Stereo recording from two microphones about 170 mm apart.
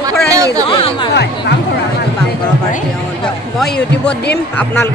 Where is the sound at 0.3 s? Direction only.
20° right (ahead or behind).